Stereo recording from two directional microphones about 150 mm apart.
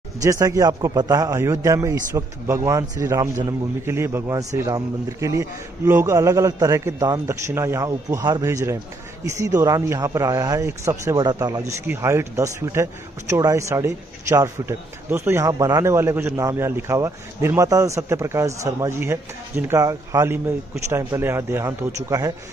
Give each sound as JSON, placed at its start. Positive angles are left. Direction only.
{"t": 0.2, "sound": "a man's voice", "side_deg": -20}